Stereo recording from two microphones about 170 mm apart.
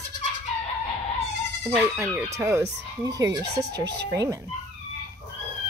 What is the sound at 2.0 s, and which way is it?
Speech, 15° right (ahead or behind).